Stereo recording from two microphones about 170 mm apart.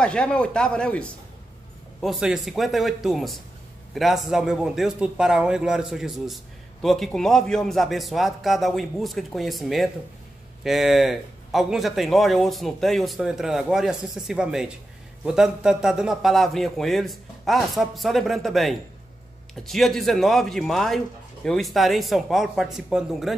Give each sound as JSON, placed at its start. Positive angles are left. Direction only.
{"t": 0.0, "sound": "a man's voice", "side_deg": 5}